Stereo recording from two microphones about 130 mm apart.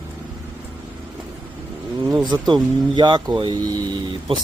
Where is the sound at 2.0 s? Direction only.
30° right (ahead or behind).